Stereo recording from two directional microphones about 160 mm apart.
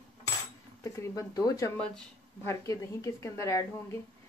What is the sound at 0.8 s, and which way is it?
A woman's voice, 20° left (ahead or behind).